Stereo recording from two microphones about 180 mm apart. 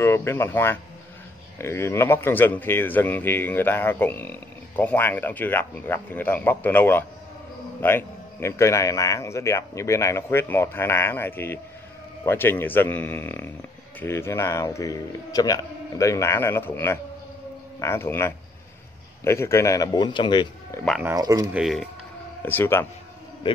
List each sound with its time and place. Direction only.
0.0 s speech: 15° left (ahead or behind)
21.0 s speech: 15° right (ahead or behind)
21.5 s speech: centre (ahead or behind)
22.4 s speech: 10° left (ahead or behind)